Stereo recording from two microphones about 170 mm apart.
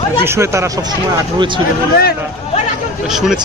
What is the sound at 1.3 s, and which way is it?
Speech, 30° right (ahead or behind).